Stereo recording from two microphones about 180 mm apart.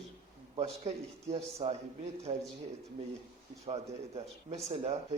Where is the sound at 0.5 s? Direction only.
30° right (ahead or behind).